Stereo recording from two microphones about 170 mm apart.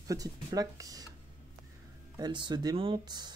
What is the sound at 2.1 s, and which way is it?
Speech, 25° right (ahead or behind).